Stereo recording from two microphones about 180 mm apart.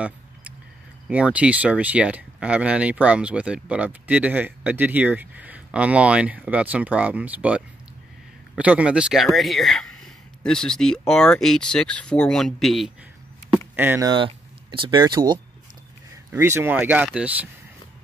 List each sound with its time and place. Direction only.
1.0 s speech: 5° right (ahead or behind)
13.7 s speech: 15° right (ahead or behind)
14.1 s speech: 30° right (ahead or behind); by 17.5 s 10° right (ahead or behind)